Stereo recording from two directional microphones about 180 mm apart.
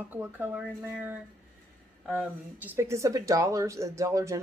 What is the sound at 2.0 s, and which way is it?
Speech, 10° right (ahead or behind).